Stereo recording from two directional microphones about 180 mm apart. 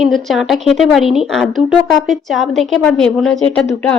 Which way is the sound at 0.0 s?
Centre (ahead or behind).